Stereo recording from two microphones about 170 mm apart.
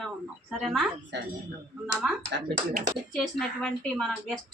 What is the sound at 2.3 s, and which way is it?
Speech, 90° right.